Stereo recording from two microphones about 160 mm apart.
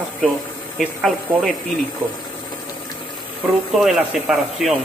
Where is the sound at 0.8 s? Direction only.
5° right (ahead or behind).